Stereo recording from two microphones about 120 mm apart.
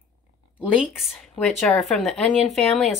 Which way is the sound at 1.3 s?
5° left (ahead or behind).